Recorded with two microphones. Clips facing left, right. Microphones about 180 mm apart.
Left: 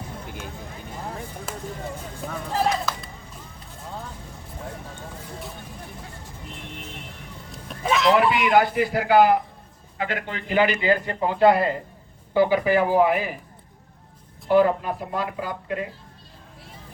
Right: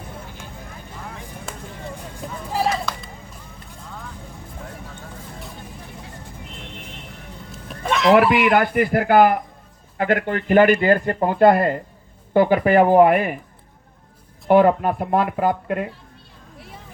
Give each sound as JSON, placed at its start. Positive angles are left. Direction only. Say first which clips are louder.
{"t": 1.5, "sound": "vehicle", "louder": "even", "side_deg": 0}
{"t": 2.5, "sound": "a sound", "louder": "right 1 dB", "side_deg": -5}
{"t": 7.5, "sound": "fowl", "louder": "even", "side_deg": 0}
{"t": 8.4, "sound": "speech", "louder": "right 2 dB", "side_deg": -55}
{"t": 14.4, "sound": "speech", "louder": "right 4 dB", "side_deg": -55}